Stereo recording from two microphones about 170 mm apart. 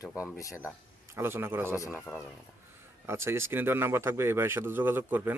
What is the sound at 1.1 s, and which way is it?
Speech, 15° right (ahead or behind).